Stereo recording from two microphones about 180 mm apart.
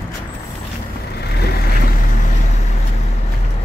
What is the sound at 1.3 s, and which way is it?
Vehicle, 60° left (ahead or behind).